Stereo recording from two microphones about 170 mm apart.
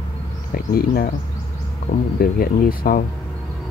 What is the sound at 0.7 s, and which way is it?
Speech, 60° left (ahead or behind).